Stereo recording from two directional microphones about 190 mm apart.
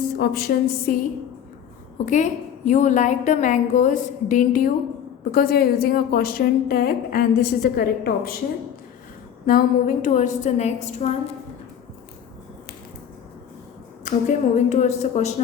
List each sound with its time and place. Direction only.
0.2 s a woman's voice: 55° left (ahead or behind)
2.0 s a woman's voice: 40° left (ahead or behind)
9.5 s a woman's voice: 45° left (ahead or behind)
14.0 s a woman's voice: 40° left (ahead or behind)